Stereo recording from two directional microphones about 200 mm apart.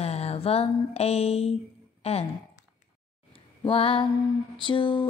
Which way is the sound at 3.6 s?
25° left (ahead or behind).